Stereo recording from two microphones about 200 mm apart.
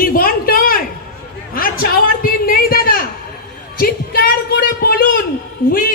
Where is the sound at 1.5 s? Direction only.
45° left (ahead or behind).